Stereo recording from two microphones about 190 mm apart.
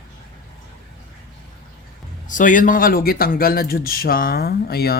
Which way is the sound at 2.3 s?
45° left (ahead or behind).